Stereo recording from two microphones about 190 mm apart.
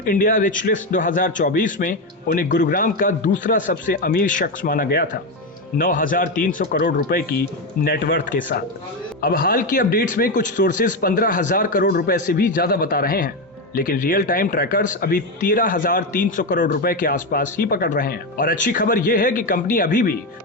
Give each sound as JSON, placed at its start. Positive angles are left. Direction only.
{"t": 0.0, "sound": "speech", "side_deg": 45}